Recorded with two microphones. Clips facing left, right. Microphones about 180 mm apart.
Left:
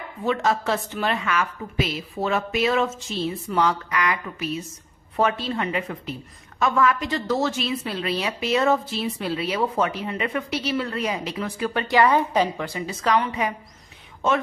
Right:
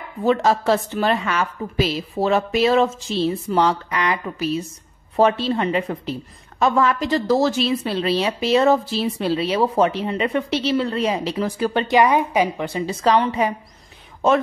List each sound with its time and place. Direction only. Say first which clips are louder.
0.2 s a woman's voice: right 5 dB; 35° right (ahead or behind)
12.0 s a woman's voice: right 1 dB; 10° right (ahead or behind)
12.6 s speech: right 5 dB; 30° right (ahead or behind)